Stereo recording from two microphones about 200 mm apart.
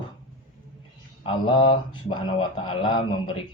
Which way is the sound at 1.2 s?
25° left (ahead or behind).